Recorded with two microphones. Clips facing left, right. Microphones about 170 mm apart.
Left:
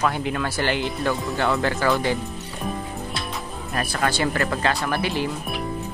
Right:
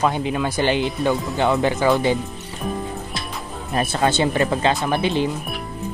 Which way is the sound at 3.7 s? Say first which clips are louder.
Right 5 dB; 25° right (ahead or behind).